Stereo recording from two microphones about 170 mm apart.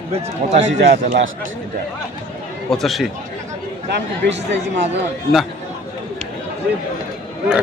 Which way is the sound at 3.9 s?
90° right.